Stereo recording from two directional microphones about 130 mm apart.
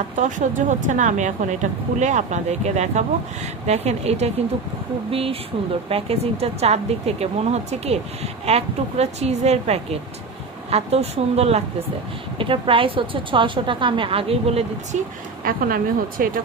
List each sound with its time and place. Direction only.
0.1 s a woman's voice: 75° right (ahead or behind); by 11.6 s 55° right (ahead or behind)
12.4 s speech: 45° right (ahead or behind)
15.4 s speech: 90° right